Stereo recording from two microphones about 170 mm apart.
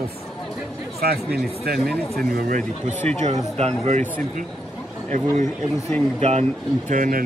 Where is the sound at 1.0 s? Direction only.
65° right (ahead or behind).